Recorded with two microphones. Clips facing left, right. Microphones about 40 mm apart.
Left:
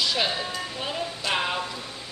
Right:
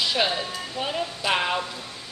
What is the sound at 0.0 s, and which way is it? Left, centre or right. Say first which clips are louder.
Music: right 2 dB; centre.